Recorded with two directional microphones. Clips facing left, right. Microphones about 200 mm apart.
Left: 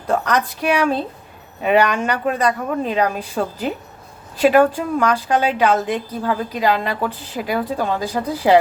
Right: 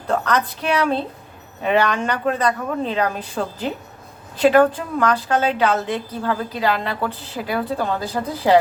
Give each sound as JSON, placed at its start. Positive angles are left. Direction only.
{"t": 0.1, "sound": "a woman's voice", "side_deg": 10}